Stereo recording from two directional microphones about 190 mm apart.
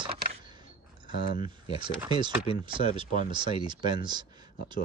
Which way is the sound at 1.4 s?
25° right (ahead or behind).